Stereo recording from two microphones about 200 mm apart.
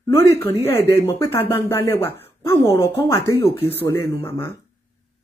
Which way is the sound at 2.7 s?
25° left (ahead or behind).